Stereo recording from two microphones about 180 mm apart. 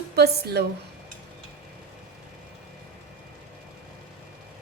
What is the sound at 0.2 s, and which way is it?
Speech, 60° right (ahead or behind).